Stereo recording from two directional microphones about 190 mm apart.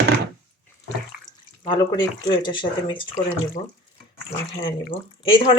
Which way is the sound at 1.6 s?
25° left (ahead or behind).